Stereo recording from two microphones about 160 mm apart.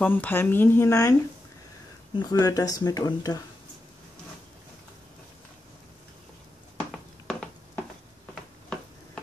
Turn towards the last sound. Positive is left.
turn(degrees=5)  # may be behind; listen again after turning